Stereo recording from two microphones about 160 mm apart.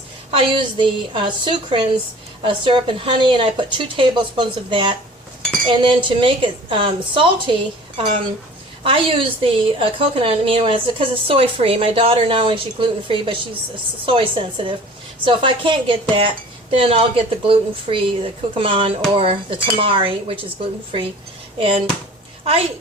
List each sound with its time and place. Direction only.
0.3 s a woman's voice: 35° right (ahead or behind)
8.8 s a woman's voice: 35° right (ahead or behind)